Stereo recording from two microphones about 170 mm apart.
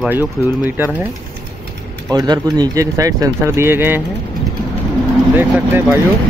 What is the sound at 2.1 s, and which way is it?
Speech, 25° right (ahead or behind).